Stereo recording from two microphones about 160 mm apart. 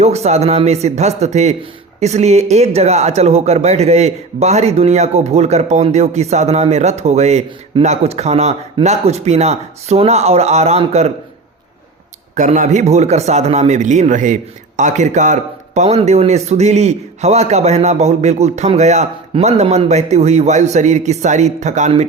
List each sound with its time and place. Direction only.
0.0 s speech: 40° right (ahead or behind)
12.3 s speech: 50° right (ahead or behind)